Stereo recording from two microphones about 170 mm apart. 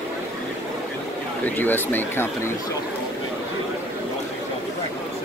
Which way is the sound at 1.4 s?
10° left (ahead or behind).